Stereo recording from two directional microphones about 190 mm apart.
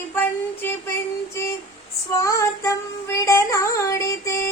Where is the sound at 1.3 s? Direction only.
15° left (ahead or behind).